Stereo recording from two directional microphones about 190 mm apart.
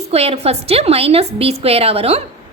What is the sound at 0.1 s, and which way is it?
A woman's voice, 30° right (ahead or behind).